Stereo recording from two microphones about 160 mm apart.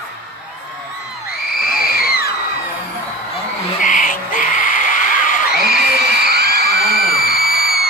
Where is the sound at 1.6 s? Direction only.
70° left (ahead or behind).